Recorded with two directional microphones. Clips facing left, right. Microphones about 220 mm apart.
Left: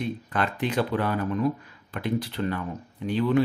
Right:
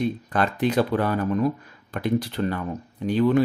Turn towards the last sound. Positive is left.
turn(degrees=-45)  # may be behind; listen again after turning